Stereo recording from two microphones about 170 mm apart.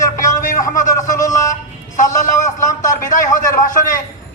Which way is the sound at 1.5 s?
50° left (ahead or behind).